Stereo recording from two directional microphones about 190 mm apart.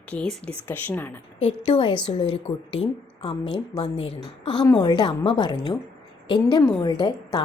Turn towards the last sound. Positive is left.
turn(degrees=20)  # may be behind; listen again after turning